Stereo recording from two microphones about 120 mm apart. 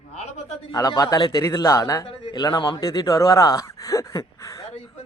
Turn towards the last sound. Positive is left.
turn(degrees=25)  # may be behind; listen again after turning